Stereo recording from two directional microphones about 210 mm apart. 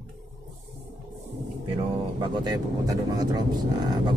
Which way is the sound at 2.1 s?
20° right (ahead or behind).